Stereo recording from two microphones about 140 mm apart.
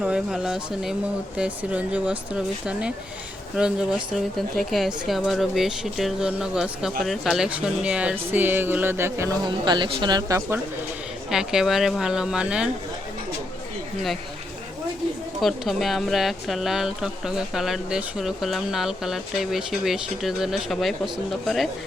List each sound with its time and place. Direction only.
0.0 s speech: 5° right (ahead or behind)
3.5 s speech: 5° right (ahead or behind)
9.5 s speech: 35° right (ahead or behind)
11.3 s speech: 5° right (ahead or behind)
15.4 s speech: centre (ahead or behind)